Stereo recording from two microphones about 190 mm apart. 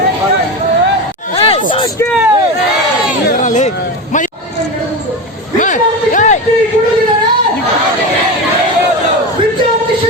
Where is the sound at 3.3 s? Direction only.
40° left (ahead or behind).